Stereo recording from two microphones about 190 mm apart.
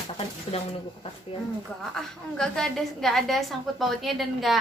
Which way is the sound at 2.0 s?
5° left (ahead or behind).